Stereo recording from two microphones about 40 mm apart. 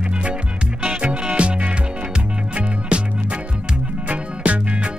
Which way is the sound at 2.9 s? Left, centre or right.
Right.